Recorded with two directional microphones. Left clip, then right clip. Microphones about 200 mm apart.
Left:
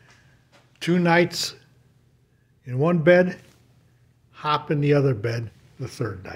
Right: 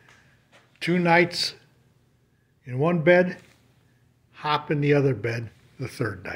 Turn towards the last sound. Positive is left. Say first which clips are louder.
# right 1 dB
turn(degrees=0)  # may be behind; listen again after turning